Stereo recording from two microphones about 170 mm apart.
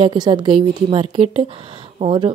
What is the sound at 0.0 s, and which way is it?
Mantra, 30° right (ahead or behind).